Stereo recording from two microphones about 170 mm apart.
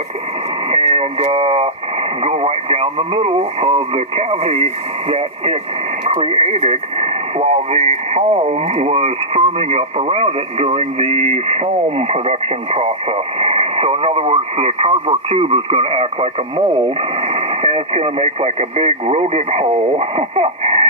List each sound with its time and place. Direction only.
0.7 s speech: 35° right (ahead or behind)